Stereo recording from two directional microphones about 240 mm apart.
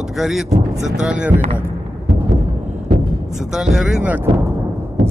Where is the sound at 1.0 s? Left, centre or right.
Centre.